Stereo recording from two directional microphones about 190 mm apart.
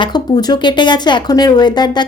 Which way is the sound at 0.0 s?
20° left (ahead or behind).